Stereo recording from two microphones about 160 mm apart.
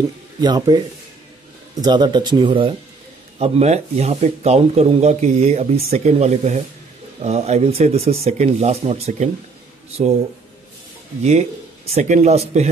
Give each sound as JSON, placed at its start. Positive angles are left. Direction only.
{"t": 0.4, "sound": "speech", "side_deg": -25}
{"t": 11.2, "sound": "speech", "side_deg": -40}